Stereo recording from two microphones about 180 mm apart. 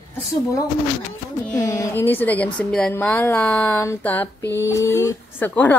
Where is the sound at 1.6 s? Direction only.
15° left (ahead or behind).